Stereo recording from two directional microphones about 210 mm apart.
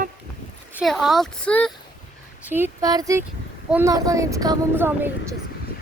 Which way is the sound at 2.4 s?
10° right (ahead or behind).